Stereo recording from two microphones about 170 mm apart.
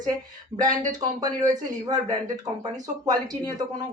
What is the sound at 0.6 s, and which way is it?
Speech, 45° right (ahead or behind).